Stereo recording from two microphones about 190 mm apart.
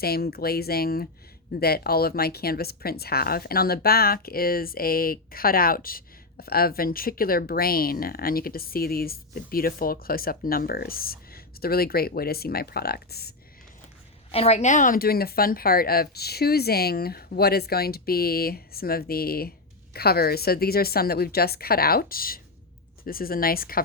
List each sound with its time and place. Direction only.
0.0 s speech: 55° left (ahead or behind)
14.3 s speech: 30° left (ahead or behind); by 23.8 s 50° left (ahead or behind)